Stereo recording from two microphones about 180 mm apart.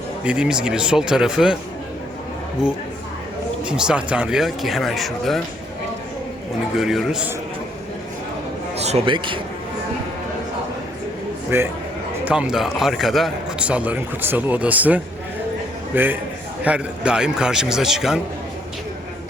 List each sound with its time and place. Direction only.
0.3 s speech: 5° right (ahead or behind)
3.6 s speech: 5° right (ahead or behind)
6.7 s speech: centre (ahead or behind)
8.8 s a man's voice: 35° right (ahead or behind)
11.5 s a man's voice: 15° right (ahead or behind)